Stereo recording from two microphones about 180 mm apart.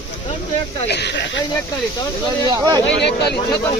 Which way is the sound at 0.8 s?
70° left (ahead or behind).